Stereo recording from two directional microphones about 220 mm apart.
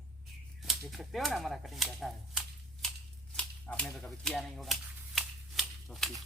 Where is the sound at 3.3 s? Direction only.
5° left (ahead or behind).